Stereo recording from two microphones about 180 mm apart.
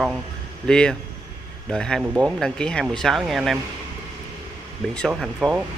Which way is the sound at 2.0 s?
10° right (ahead or behind).